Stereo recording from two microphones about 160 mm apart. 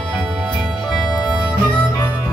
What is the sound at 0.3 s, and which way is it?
Music, centre (ahead or behind).